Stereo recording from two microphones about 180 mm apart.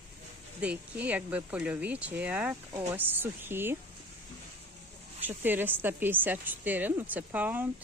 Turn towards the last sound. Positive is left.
turn(degrees=-10)  # may be behind; listen again after turning